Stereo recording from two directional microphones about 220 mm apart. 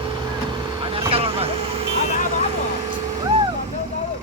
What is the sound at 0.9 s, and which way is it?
Vehicle, 25° right (ahead or behind).